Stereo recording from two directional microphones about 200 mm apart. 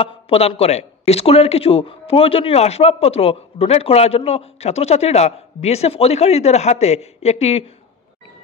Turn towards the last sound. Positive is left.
turn(degrees=30)  # may be behind; listen again after turning